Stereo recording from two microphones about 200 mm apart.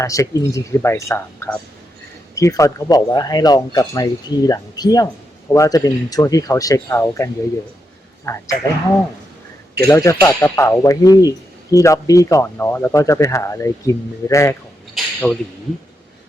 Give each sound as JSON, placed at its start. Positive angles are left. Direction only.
{"t": 0.0, "sound": "speech", "side_deg": 15}
{"t": 9.9, "sound": "speech", "side_deg": 15}
{"t": 14.9, "sound": "a sound", "side_deg": 10}